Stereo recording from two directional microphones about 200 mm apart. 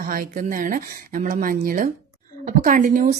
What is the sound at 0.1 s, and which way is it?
A woman's voice, 45° right (ahead or behind).